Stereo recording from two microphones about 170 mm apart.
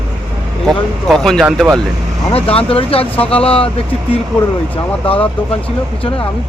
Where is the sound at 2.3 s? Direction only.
35° left (ahead or behind).